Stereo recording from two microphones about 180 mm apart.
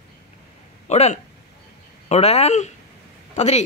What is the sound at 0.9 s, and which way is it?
Speech, 35° left (ahead or behind).